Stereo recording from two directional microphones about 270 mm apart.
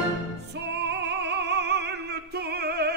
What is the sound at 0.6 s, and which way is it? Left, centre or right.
Music, right.